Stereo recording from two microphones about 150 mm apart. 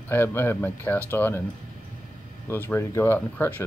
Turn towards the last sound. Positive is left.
turn(degrees=15)  # may be behind; listen again after turning